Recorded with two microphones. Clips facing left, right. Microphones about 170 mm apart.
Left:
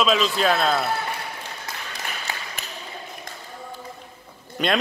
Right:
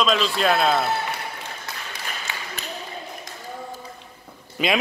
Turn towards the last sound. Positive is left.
turn(degrees=-5)  # may be behind; listen again after turning